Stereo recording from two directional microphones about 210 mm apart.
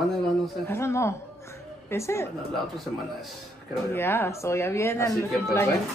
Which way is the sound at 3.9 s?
10° left (ahead or behind).